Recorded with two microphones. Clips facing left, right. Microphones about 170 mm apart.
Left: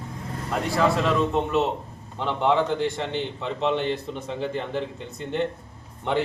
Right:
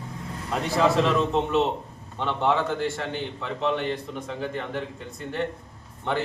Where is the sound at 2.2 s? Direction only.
15° left (ahead or behind).